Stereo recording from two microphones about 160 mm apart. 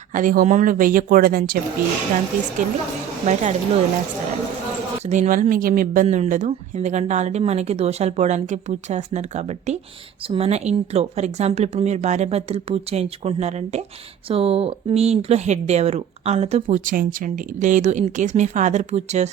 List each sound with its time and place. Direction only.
0.1 s speech: 55° right (ahead or behind)
2.6 s speech: 55° right (ahead or behind)
5.0 s speech: 45° right (ahead or behind)